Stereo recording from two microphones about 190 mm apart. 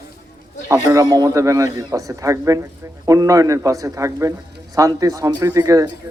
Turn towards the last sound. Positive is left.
turn(degrees=-15)  # may be behind; listen again after turning